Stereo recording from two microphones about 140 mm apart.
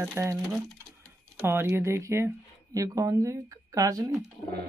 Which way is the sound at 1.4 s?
15° right (ahead or behind).